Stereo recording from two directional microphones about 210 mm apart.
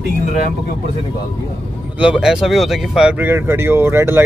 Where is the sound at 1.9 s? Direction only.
5° right (ahead or behind).